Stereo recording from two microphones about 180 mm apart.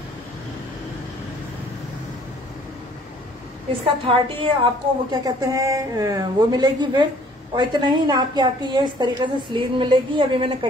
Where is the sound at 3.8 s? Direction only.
30° right (ahead or behind).